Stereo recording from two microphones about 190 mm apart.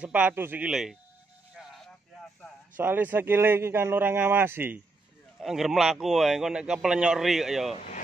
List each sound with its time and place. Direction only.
0.0 s a man's voice: 5° right (ahead or behind)
1.5 s a sound: centre (ahead or behind)
2.8 s a man's voice: 10° right (ahead or behind)
7.7 s speech: 40° left (ahead or behind)